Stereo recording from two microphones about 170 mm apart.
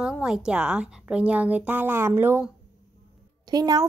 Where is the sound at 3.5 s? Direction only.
25° right (ahead or behind).